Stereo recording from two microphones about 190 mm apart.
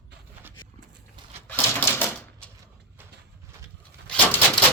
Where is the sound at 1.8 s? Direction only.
10° left (ahead or behind).